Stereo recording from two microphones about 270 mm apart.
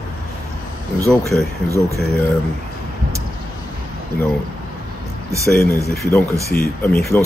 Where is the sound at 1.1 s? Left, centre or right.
Centre.